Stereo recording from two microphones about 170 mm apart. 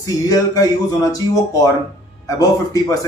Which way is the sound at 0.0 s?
20° left (ahead or behind).